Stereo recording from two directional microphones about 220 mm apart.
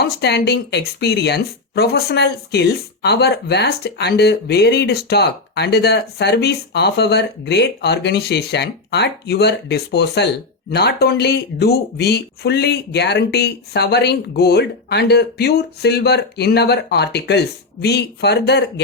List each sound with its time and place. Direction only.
0.2 s speech: 50° left (ahead or behind)